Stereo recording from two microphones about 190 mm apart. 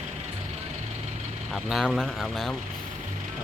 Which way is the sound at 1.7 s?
Centre (ahead or behind).